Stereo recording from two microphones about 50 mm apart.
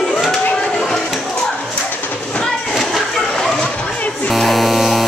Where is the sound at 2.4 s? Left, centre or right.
Centre.